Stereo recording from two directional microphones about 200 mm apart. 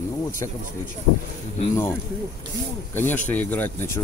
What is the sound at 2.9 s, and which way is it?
Speech, 10° left (ahead or behind).